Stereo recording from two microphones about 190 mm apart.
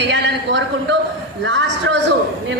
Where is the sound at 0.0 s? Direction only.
65° right (ahead or behind).